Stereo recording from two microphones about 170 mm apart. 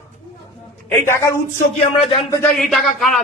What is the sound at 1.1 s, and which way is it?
Speech, 15° left (ahead or behind).